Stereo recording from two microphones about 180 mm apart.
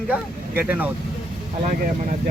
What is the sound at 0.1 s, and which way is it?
Speech, 10° right (ahead or behind).